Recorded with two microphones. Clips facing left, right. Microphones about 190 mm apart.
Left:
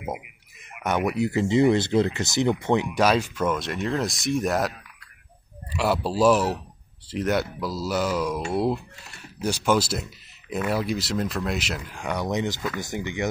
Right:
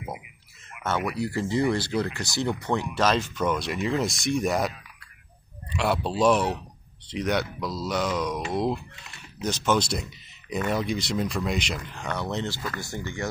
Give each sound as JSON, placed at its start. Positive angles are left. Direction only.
{"t": 0.8, "sound": "speech", "side_deg": 20}